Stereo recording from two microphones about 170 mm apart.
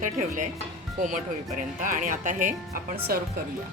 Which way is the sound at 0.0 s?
50° right (ahead or behind).